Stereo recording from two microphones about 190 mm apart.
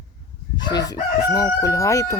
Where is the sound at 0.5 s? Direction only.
20° left (ahead or behind).